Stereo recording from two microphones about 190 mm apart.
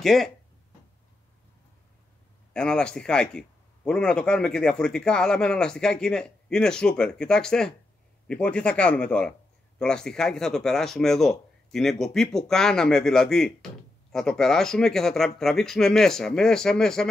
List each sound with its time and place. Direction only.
0.0 s a man's voice: centre (ahead or behind)
2.5 s a man's voice: 5° left (ahead or behind)